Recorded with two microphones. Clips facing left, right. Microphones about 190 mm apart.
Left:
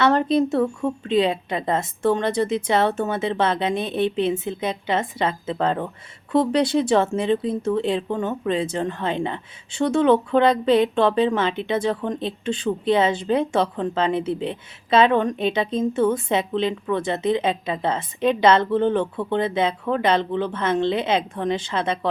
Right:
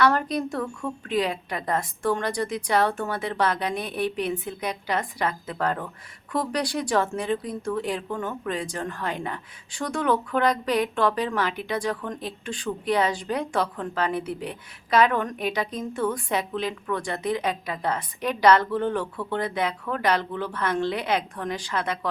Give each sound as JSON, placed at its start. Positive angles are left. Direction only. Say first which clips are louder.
{"t": 0.0, "sound": "speech", "louder": "left 5 dB", "side_deg": 25}